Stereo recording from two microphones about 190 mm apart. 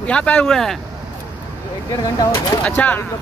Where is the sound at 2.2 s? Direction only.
20° left (ahead or behind).